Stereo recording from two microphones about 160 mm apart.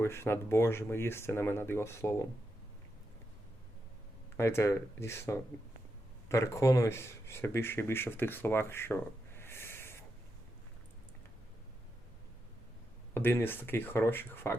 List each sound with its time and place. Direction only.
0.0 s speech: 15° left (ahead or behind)
4.4 s speech: 15° left (ahead or behind)
9.4 s a sound: 15° left (ahead or behind)
13.1 s speech: 15° left (ahead or behind)